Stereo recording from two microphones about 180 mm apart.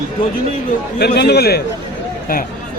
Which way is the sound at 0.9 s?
65° left (ahead or behind).